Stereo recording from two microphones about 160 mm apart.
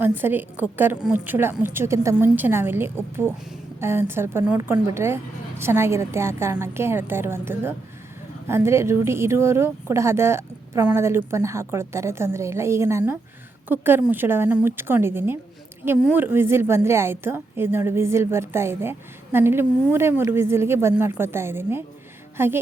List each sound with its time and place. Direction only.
0.0 s a woman's voice: 15° right (ahead or behind)